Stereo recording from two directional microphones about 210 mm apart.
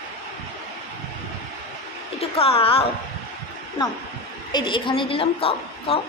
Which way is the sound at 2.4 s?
25° left (ahead or behind).